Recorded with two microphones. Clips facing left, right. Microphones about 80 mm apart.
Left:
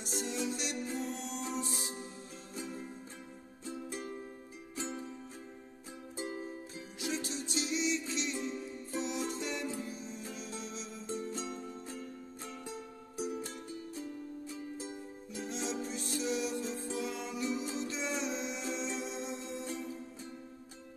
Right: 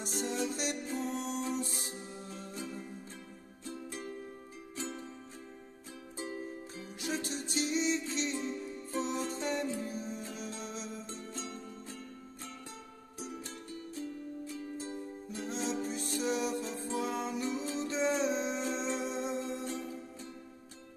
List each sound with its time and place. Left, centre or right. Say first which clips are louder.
0.0 s music: right 2 dB; right
3.6 s music: left 1 dB; left
7.0 s music: right 1 dB; right
11.3 s music: left 2 dB; centre
15.4 s music: right 2 dB; right